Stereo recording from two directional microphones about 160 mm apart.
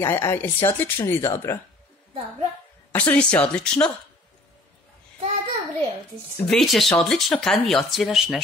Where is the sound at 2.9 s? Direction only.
10° left (ahead or behind).